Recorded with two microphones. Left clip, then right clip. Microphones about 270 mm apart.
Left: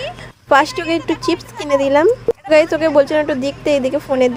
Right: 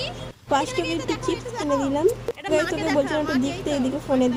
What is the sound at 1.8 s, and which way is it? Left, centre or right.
Speech, left.